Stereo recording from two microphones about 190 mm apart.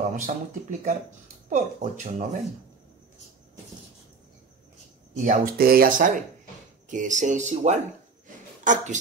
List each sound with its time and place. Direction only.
0.1 s speech: 45° right (ahead or behind)
5.1 s speech: 40° right (ahead or behind)